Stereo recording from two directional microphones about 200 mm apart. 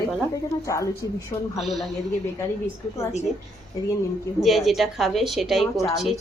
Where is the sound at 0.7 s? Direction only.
15° left (ahead or behind).